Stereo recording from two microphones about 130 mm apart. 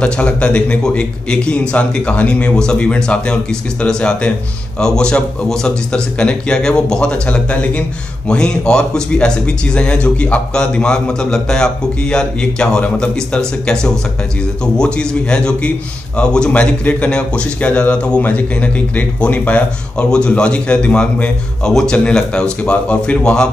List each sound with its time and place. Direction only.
0.0 s a man's voice: 10° left (ahead or behind)